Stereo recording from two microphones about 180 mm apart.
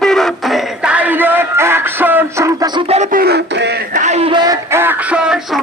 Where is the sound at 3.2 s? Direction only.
65° right (ahead or behind).